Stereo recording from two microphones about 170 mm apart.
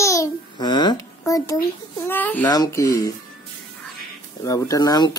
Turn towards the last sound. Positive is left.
turn(degrees=25)  # may be behind; listen again after turning